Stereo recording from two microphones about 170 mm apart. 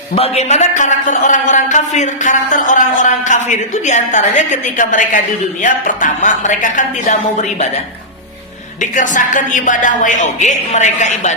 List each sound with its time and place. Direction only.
0.2 s a man's voice: 40° left (ahead or behind)
8.8 s a man's voice: 50° left (ahead or behind)